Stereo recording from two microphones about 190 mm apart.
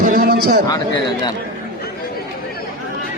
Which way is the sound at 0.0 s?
50° right (ahead or behind).